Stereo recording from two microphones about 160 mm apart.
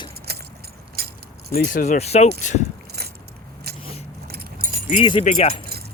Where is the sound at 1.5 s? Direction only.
55° left (ahead or behind).